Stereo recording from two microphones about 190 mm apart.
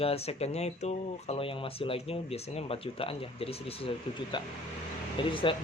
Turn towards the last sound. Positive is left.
turn(degrees=25)  # may be behind; listen again after turning